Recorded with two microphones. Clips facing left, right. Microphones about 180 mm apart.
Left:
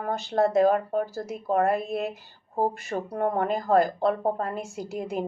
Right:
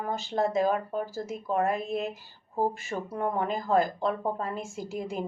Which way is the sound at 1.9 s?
65° left (ahead or behind).